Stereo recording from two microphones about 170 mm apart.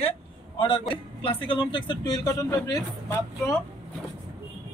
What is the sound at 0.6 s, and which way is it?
A man's voice, 30° left (ahead or behind).